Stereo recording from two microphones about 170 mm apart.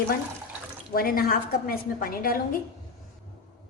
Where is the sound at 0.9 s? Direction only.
60° left (ahead or behind).